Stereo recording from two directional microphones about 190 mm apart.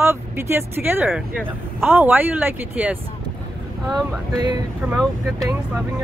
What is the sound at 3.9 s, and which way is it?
Speech, 20° right (ahead or behind).